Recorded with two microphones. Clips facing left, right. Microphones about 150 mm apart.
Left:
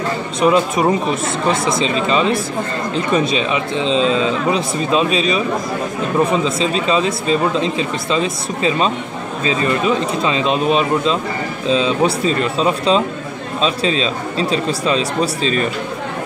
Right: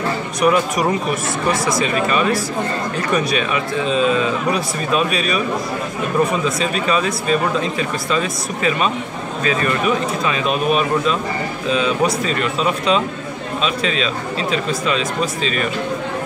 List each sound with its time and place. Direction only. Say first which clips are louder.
0.4 s speech: left 2 dB; 25° left (ahead or behind)